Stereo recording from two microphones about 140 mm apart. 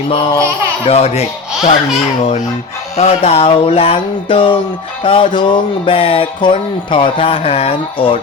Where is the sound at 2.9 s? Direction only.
50° left (ahead or behind).